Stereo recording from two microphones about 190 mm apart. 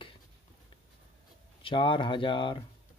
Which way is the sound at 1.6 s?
25° left (ahead or behind).